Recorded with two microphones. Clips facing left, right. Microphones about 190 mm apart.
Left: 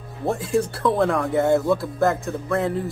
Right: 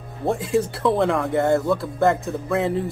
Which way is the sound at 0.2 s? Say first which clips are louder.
Right 1 dB; centre (ahead or behind).